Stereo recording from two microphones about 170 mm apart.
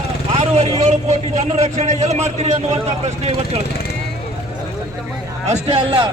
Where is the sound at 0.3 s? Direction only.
40° right (ahead or behind).